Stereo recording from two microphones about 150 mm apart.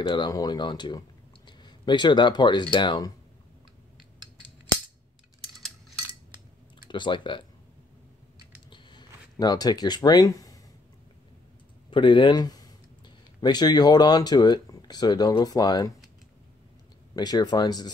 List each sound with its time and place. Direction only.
0.0 s speech: 30° left (ahead or behind)
6.9 s speech: 35° left (ahead or behind)
8.6 s a sound: 30° left (ahead or behind)
11.9 s speech: 30° left (ahead or behind)
17.1 s speech: 25° left (ahead or behind)